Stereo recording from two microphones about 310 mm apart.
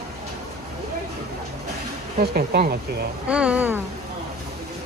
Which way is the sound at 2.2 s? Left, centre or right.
Right.